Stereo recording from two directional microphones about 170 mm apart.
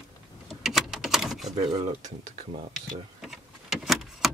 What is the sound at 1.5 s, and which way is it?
Speech, 25° right (ahead or behind).